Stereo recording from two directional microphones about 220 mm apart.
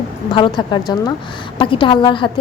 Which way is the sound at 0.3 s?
20° left (ahead or behind).